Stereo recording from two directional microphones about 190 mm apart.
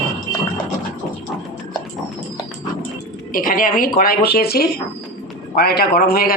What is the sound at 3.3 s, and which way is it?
Speech, 45° left (ahead or behind).